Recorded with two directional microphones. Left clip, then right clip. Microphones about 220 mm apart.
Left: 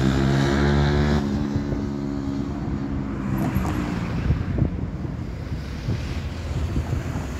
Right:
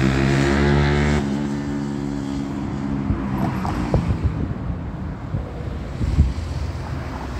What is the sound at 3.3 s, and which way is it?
Vehicle, 55° left (ahead or behind).